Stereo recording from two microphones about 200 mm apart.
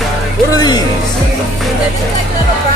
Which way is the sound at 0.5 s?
20° left (ahead or behind).